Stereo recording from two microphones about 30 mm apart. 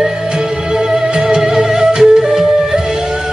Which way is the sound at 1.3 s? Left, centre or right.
Centre.